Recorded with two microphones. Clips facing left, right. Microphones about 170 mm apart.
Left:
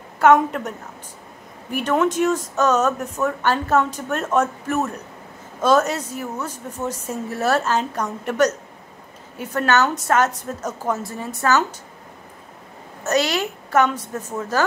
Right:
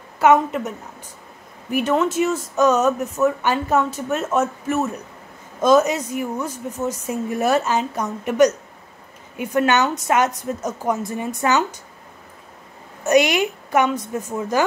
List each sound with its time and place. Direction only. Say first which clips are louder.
0.2 s speech: even; 5° right (ahead or behind)
13.0 s speech: right 4 dB; 15° right (ahead or behind)